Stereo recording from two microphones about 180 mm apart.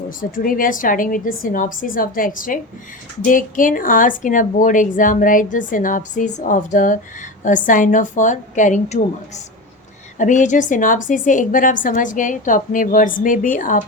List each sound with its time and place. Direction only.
0.2 s speech: 50° left (ahead or behind)